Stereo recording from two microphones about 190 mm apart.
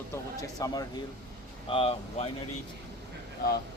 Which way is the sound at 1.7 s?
30° left (ahead or behind).